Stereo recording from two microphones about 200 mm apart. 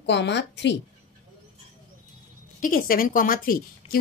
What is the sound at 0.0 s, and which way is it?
Speech, 60° left (ahead or behind).